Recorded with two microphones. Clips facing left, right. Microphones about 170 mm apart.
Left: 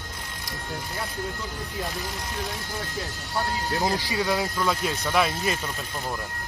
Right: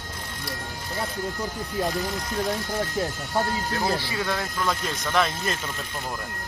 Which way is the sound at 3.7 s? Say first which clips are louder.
Even; 15° left (ahead or behind).